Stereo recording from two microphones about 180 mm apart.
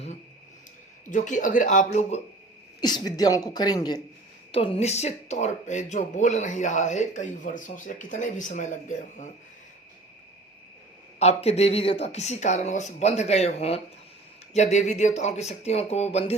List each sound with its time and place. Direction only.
1.1 s speech: 45° left (ahead or behind)
2.8 s speech: 20° left (ahead or behind)
4.5 s speech: 30° left (ahead or behind)
11.2 s speech: 35° left (ahead or behind)